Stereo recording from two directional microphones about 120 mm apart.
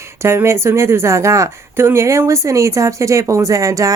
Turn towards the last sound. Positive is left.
turn(degrees=-25)  # may be behind; listen again after turning